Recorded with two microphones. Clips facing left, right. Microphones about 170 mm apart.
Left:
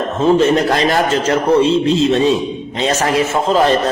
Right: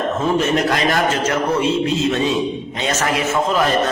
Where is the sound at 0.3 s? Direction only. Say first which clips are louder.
Left 5 dB; 35° left (ahead or behind).